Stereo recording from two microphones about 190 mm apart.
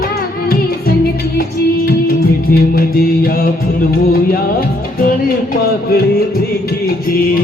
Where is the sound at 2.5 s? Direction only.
50° left (ahead or behind).